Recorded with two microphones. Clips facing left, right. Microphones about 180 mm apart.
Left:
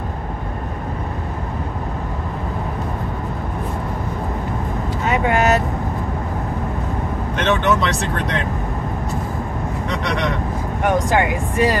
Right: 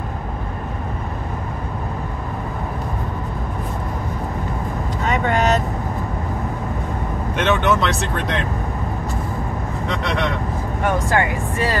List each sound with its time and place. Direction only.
5.0 s vehicle: 10° left (ahead or behind)
7.3 s speech: centre (ahead or behind)
11.1 s speech: 15° left (ahead or behind)